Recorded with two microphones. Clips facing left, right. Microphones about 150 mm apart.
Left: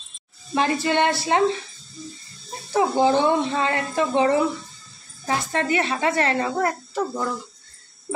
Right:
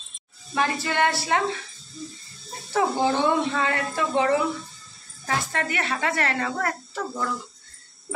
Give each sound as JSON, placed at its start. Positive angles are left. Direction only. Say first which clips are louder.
{"t": 0.6, "sound": "a child's voice", "louder": "left 3 dB", "side_deg": 25}
{"t": 2.7, "sound": "a child's voice", "louder": "left 4 dB", "side_deg": 25}